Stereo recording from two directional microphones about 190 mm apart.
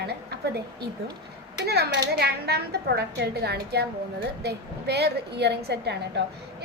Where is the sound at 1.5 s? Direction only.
55° right (ahead or behind).